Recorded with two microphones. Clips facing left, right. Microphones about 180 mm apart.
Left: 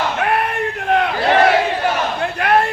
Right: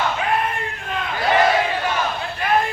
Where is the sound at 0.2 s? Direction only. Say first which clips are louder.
Left 4 dB; 65° left (ahead or behind).